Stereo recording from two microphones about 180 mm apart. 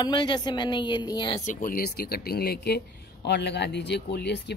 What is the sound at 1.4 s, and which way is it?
Speech, 50° left (ahead or behind).